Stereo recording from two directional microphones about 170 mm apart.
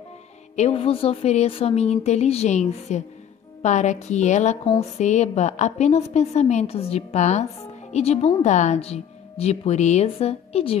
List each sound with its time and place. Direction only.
0.6 s a woman's voice: 35° left (ahead or behind)